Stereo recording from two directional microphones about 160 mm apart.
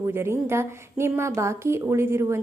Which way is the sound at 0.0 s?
15° right (ahead or behind).